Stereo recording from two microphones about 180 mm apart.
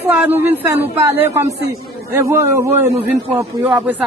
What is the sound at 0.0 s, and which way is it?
Speech, 10° right (ahead or behind).